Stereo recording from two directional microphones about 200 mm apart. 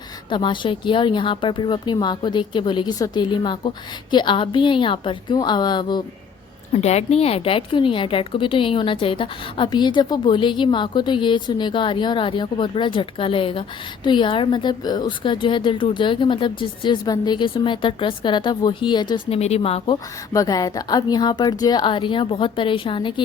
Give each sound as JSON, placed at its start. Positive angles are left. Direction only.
{"t": 0.3, "sound": "a woman's voice", "side_deg": 25}
{"t": 6.7, "sound": "a woman's voice", "side_deg": 35}
{"t": 20.3, "sound": "a woman's voice", "side_deg": 15}